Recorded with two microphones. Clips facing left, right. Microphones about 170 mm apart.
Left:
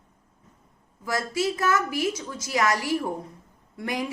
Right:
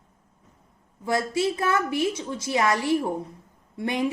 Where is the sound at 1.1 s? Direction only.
25° right (ahead or behind).